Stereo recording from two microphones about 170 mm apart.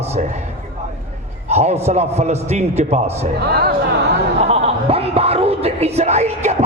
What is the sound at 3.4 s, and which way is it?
Speech, 65° right (ahead or behind).